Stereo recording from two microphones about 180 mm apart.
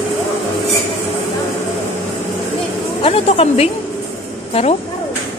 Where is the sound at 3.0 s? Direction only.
30° left (ahead or behind).